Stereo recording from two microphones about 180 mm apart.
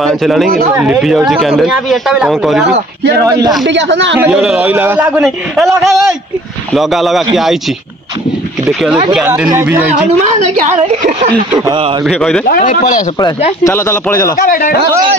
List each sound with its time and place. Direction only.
0.0 s speech: centre (ahead or behind)
3.3 s a man's voice: 20° right (ahead or behind)
3.6 s speech: 85° right
4.3 s a man's voice: 5° right (ahead or behind)
5.7 s a man's voice: 15° right (ahead or behind)
6.7 s speech: centre (ahead or behind)
9.5 s a man's voice: 15° right (ahead or behind)
10.2 s a woman's voice: 40° right (ahead or behind)
12.0 s speech: centre (ahead or behind)
12.4 s speech: 50° left (ahead or behind)
13.7 s speech: 15° left (ahead or behind)
14.3 s speech: 50° left (ahead or behind)